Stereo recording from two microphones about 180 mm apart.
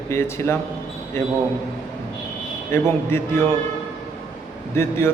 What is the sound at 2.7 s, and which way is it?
Speech, 15° left (ahead or behind).